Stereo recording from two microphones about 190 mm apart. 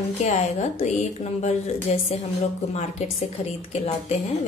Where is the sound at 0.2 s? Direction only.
35° left (ahead or behind).